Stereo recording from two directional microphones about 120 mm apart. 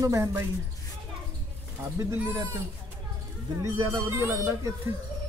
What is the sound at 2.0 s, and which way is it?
Speech, 25° right (ahead or behind).